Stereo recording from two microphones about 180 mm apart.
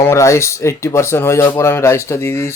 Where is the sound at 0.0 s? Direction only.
15° left (ahead or behind).